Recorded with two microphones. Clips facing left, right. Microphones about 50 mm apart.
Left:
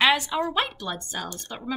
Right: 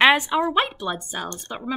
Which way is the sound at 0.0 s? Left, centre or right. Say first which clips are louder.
Right 5 dB; right.